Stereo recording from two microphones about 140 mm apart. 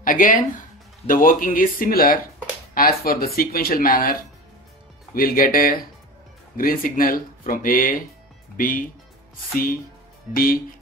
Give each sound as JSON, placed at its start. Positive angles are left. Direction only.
{"t": 0.0, "sound": "speech", "side_deg": 75}
{"t": 10.3, "sound": "speech", "side_deg": 90}